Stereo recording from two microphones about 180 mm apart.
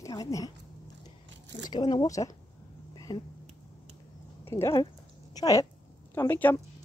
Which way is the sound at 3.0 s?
20° left (ahead or behind).